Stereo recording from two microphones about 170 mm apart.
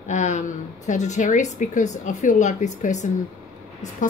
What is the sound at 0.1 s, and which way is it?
A woman's voice, 45° left (ahead or behind).